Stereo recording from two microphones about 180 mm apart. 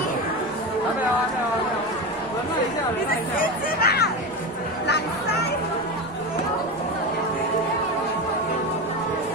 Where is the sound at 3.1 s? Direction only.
55° left (ahead or behind).